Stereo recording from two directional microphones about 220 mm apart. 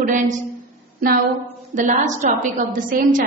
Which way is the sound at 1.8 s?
35° right (ahead or behind).